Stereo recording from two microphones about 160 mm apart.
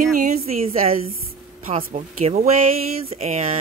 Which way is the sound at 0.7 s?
40° right (ahead or behind).